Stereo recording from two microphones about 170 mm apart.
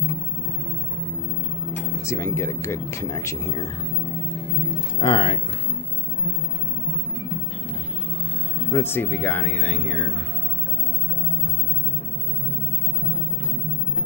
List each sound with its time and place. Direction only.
1.7 s speech: 15° left (ahead or behind)
5.0 s speech: 30° left (ahead or behind)
8.6 s speech: 15° left (ahead or behind)